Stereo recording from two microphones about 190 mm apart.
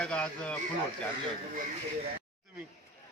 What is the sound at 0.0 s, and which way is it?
Speech, 5° left (ahead or behind).